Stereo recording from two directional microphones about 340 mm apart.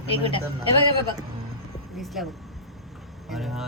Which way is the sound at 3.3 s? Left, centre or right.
Centre.